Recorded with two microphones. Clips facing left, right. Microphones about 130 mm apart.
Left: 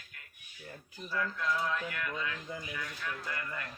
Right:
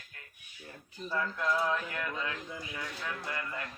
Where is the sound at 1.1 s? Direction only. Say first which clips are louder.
Right 2 dB; 30° right (ahead or behind).